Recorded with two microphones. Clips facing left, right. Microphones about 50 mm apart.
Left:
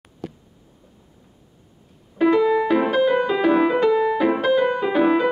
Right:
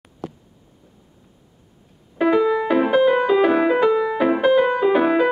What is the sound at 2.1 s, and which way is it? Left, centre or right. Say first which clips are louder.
Music: even; centre.